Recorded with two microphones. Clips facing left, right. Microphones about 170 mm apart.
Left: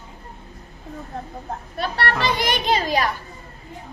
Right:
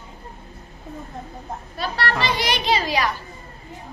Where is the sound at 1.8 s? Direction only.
60° left (ahead or behind).